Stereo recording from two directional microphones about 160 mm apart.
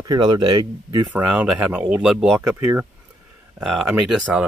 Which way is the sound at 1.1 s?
10° right (ahead or behind).